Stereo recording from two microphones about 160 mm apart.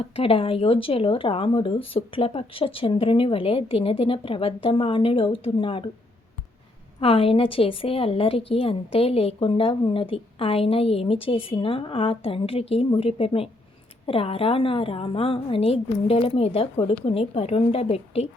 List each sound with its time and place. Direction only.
0.0 s a woman's voice: 35° left (ahead or behind)
7.0 s a woman's voice: 35° left (ahead or behind)